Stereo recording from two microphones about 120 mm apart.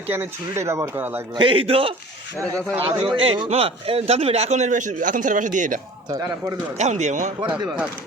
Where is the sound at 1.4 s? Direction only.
50° right (ahead or behind).